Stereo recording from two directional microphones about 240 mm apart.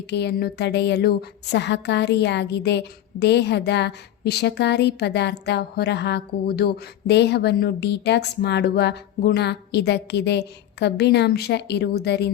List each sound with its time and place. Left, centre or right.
0.1 s a woman's voice: left